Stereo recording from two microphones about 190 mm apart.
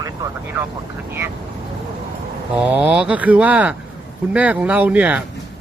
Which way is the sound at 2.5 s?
5° right (ahead or behind).